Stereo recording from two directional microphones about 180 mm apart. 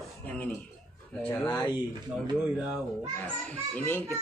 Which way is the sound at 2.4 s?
5° right (ahead or behind).